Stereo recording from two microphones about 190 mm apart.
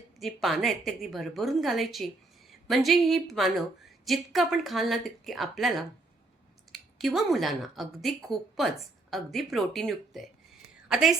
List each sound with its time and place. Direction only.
0.2 s a woman's voice: centre (ahead or behind)